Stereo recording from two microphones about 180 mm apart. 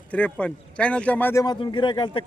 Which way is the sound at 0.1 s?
5° left (ahead or behind).